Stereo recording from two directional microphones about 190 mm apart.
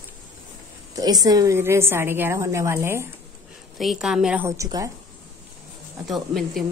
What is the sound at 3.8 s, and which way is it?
A woman's voice, centre (ahead or behind).